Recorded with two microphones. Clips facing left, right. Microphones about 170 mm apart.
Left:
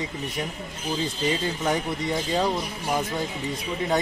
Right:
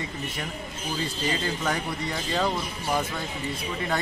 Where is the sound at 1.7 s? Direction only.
20° left (ahead or behind).